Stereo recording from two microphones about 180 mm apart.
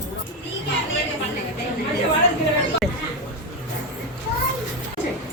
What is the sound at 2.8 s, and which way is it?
Speech, centre (ahead or behind).